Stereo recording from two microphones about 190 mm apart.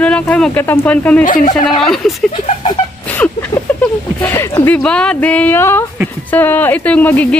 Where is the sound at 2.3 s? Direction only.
30° left (ahead or behind).